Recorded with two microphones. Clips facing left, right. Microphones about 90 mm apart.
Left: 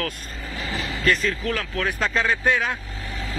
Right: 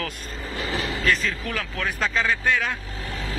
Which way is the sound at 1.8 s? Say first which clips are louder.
Left 1 dB; centre (ahead or behind).